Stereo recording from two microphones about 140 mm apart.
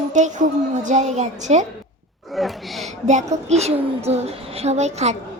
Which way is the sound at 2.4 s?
Centre (ahead or behind).